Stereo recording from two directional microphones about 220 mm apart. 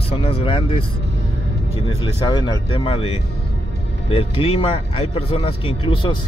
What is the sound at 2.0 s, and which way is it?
Speech, 20° left (ahead or behind).